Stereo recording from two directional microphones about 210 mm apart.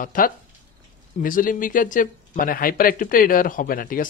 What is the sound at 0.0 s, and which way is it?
Speech, 40° left (ahead or behind).